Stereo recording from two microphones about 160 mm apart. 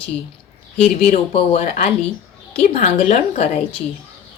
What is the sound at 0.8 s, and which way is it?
A woman's voice, 40° left (ahead or behind).